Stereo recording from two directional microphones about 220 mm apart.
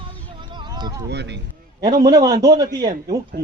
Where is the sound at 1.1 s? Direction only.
50° right (ahead or behind).